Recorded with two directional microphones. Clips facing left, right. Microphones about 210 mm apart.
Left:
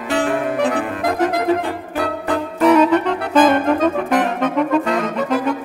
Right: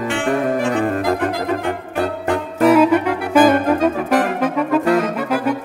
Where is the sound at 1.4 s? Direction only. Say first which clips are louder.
Left 2 dB; 35° left (ahead or behind).